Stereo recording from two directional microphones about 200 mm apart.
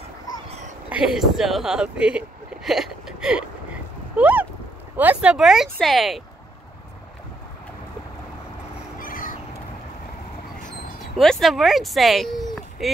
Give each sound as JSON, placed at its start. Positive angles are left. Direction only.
{"t": 0.8, "sound": "speech", "side_deg": -5}
{"t": 4.2, "sound": "a sound", "side_deg": -5}
{"t": 4.9, "sound": "speech", "side_deg": -5}
{"t": 9.0, "sound": "crow", "side_deg": 45}
{"t": 11.1, "sound": "speech", "side_deg": 0}